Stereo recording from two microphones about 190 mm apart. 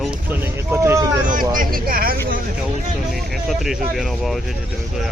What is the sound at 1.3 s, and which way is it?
Vehicle, 45° right (ahead or behind).